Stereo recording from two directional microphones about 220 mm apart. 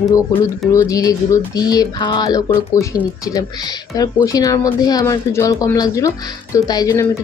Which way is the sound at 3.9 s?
15° left (ahead or behind).